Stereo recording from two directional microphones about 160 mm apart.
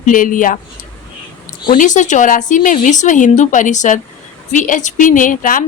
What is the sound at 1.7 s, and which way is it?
A woman's voice, 55° left (ahead or behind).